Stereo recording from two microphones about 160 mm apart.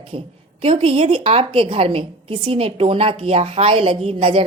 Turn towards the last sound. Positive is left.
turn(degrees=-35)  # may be behind; listen again after turning